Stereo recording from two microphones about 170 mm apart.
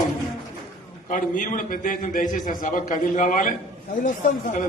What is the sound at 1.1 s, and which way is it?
A man's voice, 50° left (ahead or behind).